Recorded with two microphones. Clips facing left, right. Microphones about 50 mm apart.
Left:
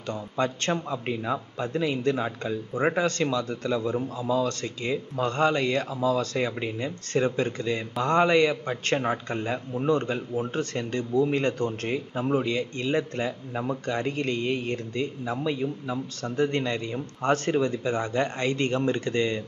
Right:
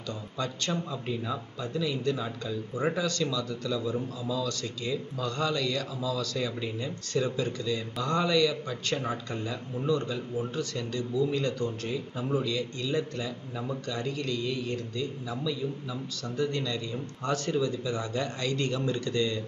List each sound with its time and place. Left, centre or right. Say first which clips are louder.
0.1 s a man's voice: left 7 dB; left